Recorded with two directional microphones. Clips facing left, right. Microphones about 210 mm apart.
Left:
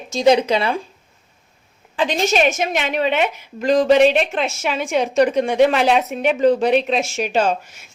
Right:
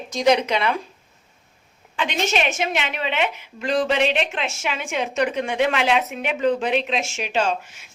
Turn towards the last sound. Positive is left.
turn(degrees=40)  # may be behind; listen again after turning